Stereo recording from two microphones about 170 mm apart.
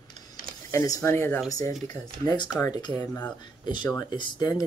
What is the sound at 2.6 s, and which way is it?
Speech, 25° left (ahead or behind).